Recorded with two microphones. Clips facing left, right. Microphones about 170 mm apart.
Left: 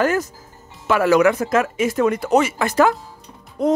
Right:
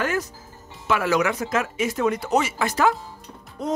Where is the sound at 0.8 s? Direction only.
50° left (ahead or behind).